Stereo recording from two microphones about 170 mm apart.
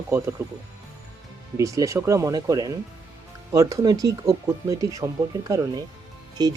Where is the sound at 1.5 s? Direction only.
20° right (ahead or behind).